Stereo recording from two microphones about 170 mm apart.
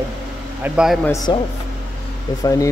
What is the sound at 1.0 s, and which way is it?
Speech, 20° left (ahead or behind).